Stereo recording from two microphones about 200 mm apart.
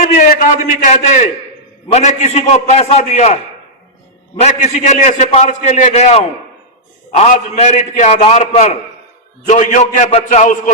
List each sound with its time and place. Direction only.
0.0 s a man's voice: 40° left (ahead or behind)
4.4 s a man's voice: 35° left (ahead or behind)